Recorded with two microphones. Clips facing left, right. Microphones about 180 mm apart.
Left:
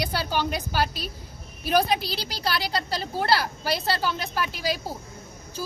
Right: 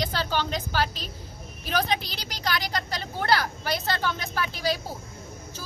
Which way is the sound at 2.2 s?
35° left (ahead or behind).